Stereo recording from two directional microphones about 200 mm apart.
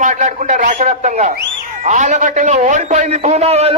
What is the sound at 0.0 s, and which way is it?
A man's voice, 40° right (ahead or behind).